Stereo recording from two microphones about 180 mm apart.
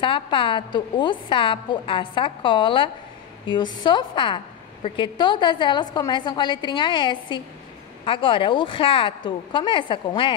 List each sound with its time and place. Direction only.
0.0 s a woman's voice: 30° left (ahead or behind)